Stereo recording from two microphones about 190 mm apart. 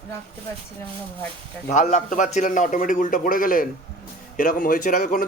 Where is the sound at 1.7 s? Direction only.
40° left (ahead or behind).